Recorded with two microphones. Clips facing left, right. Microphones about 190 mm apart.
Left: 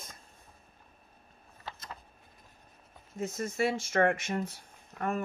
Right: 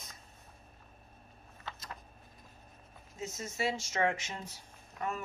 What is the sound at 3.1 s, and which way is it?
Speech, 55° left (ahead or behind).